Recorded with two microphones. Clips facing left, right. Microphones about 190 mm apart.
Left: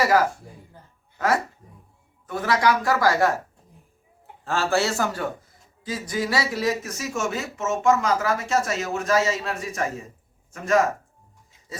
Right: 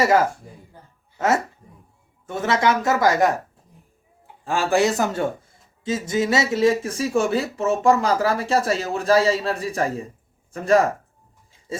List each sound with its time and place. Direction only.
0.0 s speech: 25° right (ahead or behind)
2.2 s speech: 25° right (ahead or behind)
4.4 s speech: 15° right (ahead or behind); by 10.8 s 35° right (ahead or behind)